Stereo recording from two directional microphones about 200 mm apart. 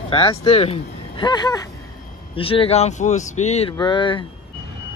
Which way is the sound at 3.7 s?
25° left (ahead or behind).